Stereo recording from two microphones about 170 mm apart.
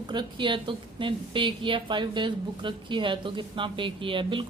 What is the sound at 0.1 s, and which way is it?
A woman's voice, 25° right (ahead or behind).